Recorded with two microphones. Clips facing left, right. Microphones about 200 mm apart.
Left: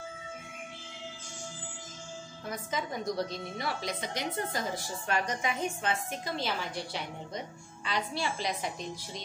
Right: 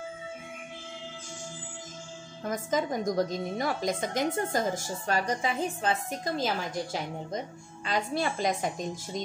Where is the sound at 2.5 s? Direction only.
45° right (ahead or behind).